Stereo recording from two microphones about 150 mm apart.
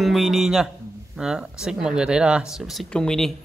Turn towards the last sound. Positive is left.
turn(degrees=5)  # may be behind; listen again after turning